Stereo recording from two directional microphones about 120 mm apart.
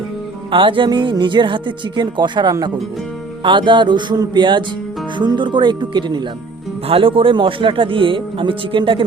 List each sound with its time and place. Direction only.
0.5 s speech: 45° right (ahead or behind)